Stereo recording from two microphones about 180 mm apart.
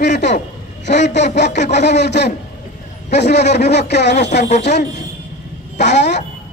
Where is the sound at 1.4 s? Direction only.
40° left (ahead or behind).